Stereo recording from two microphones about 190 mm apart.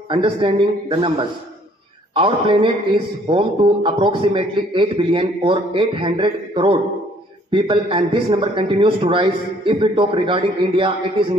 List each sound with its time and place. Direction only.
0.1 s a man's voice: 25° right (ahead or behind)
2.1 s a man's voice: 25° right (ahead or behind)